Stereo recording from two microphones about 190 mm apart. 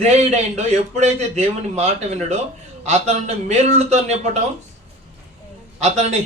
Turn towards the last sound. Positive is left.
turn(degrees=-35)  # may be behind; listen again after turning